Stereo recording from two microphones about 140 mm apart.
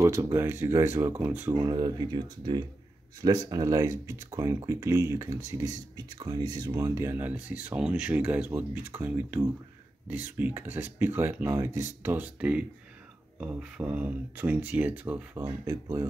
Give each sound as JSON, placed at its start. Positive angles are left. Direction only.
{"t": 0.0, "sound": "speech", "side_deg": -20}
{"t": 1.5, "sound": "speech", "side_deg": -30}